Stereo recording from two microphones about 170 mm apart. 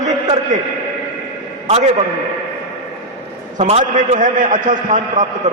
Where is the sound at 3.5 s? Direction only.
40° right (ahead or behind).